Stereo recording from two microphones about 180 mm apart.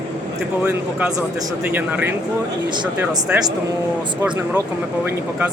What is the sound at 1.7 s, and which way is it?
Speech, 10° right (ahead or behind).